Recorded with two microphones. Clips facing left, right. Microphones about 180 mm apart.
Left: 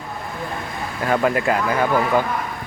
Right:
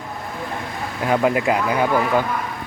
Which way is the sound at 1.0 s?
15° right (ahead or behind).